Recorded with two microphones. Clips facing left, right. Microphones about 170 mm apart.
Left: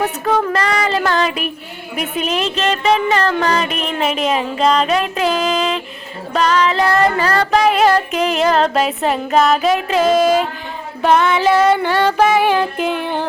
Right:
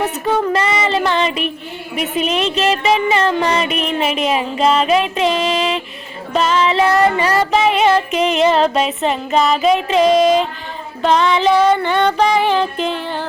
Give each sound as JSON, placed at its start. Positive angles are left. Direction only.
{"t": 0.5, "sound": "music", "side_deg": -5}